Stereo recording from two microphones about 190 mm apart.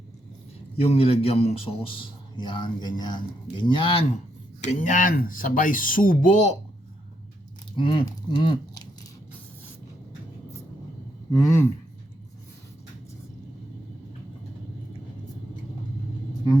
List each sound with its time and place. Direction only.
0.8 s a man's voice: 30° left (ahead or behind)
4.6 s speech: 40° left (ahead or behind)
7.8 s speech: 25° left (ahead or behind)
11.3 s speech: 15° left (ahead or behind)